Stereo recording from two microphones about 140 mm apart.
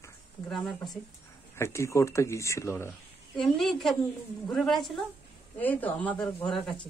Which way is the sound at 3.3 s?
5° left (ahead or behind).